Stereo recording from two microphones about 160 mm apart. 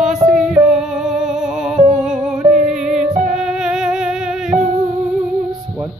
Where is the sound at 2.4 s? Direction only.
30° right (ahead or behind).